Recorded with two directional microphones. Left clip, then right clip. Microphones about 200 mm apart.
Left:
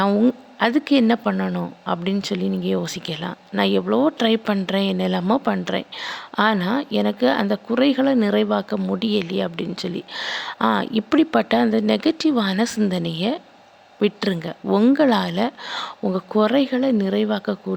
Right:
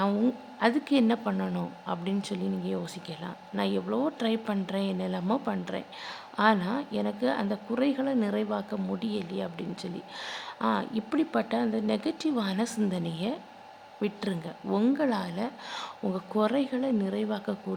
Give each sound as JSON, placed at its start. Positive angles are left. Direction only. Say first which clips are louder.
{"t": 0.0, "sound": "a woman's voice", "louder": "left 9 dB", "side_deg": 25}